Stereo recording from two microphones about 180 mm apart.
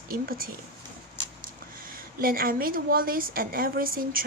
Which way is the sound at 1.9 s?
55° right (ahead or behind).